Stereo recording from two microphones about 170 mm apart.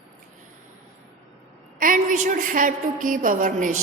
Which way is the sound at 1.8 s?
55° right (ahead or behind).